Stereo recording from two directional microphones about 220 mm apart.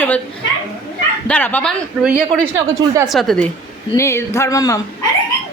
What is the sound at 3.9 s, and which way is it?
Speech, 15° left (ahead or behind).